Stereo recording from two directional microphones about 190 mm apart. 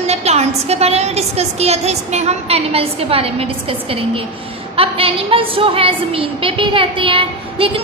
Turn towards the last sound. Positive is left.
turn(degrees=-30)  # may be behind; listen again after turning